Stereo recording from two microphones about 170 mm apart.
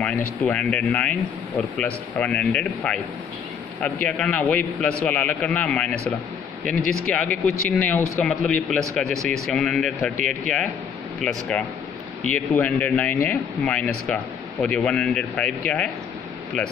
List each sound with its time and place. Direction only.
0.0 s speech: 5° left (ahead or behind)
10.1 s speech: 45° right (ahead or behind)
11.2 s speech: 5° left (ahead or behind)